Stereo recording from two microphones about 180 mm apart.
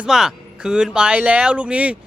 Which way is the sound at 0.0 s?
5° right (ahead or behind).